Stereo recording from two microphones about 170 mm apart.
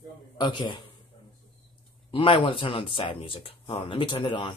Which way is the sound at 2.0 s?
30° left (ahead or behind).